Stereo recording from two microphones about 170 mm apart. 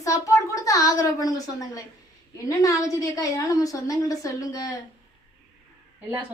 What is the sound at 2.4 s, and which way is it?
A woman's voice, 20° left (ahead or behind).